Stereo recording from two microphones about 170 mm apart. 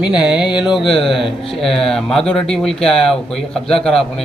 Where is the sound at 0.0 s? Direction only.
5° right (ahead or behind).